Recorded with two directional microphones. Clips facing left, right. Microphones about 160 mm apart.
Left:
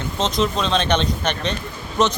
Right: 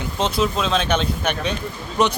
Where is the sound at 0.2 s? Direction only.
10° right (ahead or behind).